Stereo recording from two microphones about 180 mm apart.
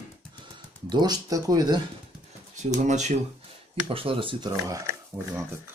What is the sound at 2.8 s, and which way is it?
Speech, 40° right (ahead or behind).